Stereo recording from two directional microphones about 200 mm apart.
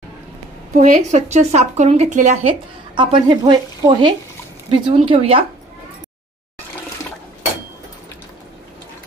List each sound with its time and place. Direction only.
0.7 s speech: 35° right (ahead or behind)
3.0 s speech: 25° right (ahead or behind)